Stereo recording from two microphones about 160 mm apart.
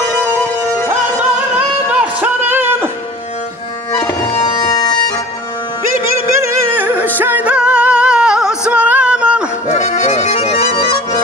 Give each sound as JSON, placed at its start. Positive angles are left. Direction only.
{"t": 1.9, "sound": "music", "side_deg": -10}
{"t": 4.6, "sound": "bagpipes", "side_deg": 25}
{"t": 6.4, "sound": "music", "side_deg": -10}
{"t": 9.7, "sound": "accordion", "side_deg": 45}